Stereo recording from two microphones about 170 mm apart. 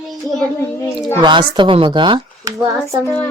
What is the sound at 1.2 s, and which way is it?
Speech, 30° right (ahead or behind).